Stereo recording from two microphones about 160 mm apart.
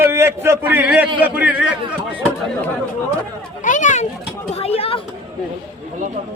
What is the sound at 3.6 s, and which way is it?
Children playing, 50° left (ahead or behind).